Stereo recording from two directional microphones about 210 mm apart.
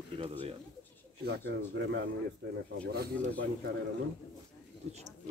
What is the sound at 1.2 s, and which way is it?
Speech, 55° right (ahead or behind).